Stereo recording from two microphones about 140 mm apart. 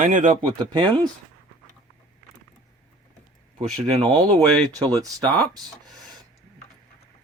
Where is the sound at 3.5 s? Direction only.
35° right (ahead or behind).